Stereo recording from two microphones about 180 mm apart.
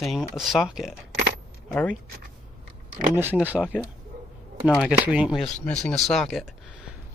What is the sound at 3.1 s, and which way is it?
Speech, 10° right (ahead or behind).